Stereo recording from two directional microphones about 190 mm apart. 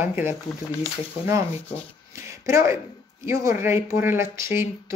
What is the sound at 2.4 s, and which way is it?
Speech, 15° right (ahead or behind).